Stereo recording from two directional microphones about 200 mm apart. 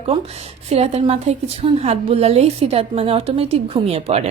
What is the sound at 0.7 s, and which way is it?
A woman's voice, 30° right (ahead or behind).